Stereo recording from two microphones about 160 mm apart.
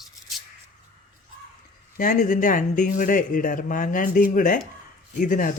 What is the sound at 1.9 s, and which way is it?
Speech, 55° left (ahead or behind).